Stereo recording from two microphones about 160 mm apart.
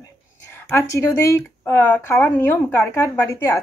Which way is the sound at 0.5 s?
15° left (ahead or behind).